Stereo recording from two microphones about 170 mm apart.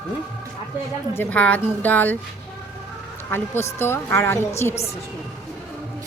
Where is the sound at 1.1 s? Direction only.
10° left (ahead or behind).